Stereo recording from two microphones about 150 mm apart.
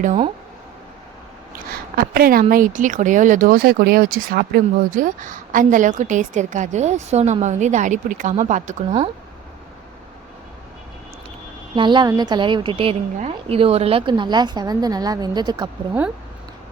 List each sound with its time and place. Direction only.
2.0 s speech: 75° right (ahead or behind); by 8.7 s 55° right (ahead or behind)
11.7 s a woman's voice: 30° right (ahead or behind)